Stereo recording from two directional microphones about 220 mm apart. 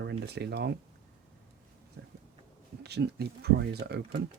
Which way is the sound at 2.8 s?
50° right (ahead or behind).